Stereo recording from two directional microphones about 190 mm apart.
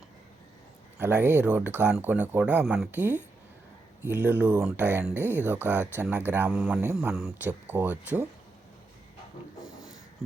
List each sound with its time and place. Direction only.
0.9 s speech: 10° right (ahead or behind)